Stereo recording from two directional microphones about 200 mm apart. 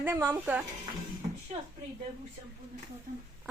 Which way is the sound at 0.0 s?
10° right (ahead or behind).